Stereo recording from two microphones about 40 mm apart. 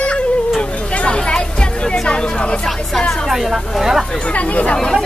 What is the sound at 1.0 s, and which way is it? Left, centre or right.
Music, left.